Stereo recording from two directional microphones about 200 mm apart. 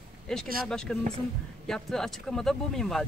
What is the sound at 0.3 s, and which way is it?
Speech, centre (ahead or behind).